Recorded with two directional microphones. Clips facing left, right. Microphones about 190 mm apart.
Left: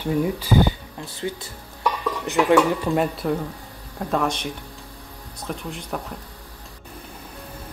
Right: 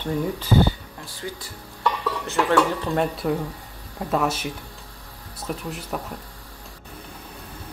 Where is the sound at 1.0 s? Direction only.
20° left (ahead or behind).